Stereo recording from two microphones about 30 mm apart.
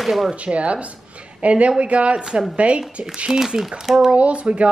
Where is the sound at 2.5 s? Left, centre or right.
Right.